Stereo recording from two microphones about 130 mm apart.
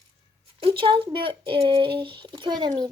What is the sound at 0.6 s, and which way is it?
Speech, 40° right (ahead or behind).